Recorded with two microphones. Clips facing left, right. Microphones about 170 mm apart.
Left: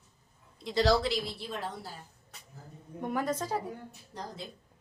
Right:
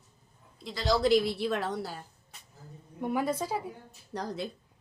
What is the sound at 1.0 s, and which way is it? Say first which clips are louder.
Speech: right 9 dB; 60° right (ahead or behind).